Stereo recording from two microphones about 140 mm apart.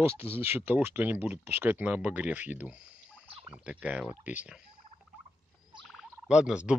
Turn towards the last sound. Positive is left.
turn(degrees=-5)  # may be behind; listen again after turning